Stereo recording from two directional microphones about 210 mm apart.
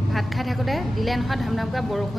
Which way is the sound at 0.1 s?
Centre (ahead or behind).